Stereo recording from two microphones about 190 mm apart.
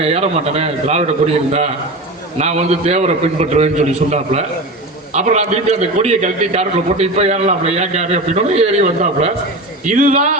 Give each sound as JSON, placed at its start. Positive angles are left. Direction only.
{"t": 0.0, "sound": "a man's voice", "side_deg": -35}
{"t": 2.4, "sound": "a man's voice", "side_deg": -35}